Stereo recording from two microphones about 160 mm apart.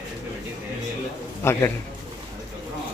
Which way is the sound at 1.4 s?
15° left (ahead or behind).